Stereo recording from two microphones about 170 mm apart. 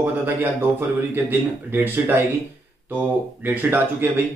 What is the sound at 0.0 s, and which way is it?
A man's voice, 10° right (ahead or behind).